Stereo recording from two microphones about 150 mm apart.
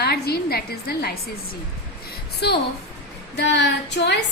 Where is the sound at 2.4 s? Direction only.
90° left.